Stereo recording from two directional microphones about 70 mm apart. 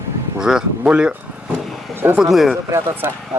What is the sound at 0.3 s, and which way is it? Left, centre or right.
Speech, centre.